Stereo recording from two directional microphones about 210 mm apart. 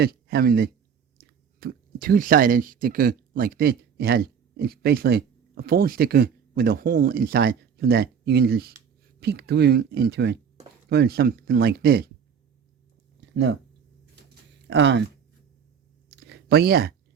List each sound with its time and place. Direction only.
0.0 s speech: 50° right (ahead or behind)
13.3 s speech: 55° right (ahead or behind)
14.7 s speech: 60° right (ahead or behind)
16.0 s a sound: 50° right (ahead or behind)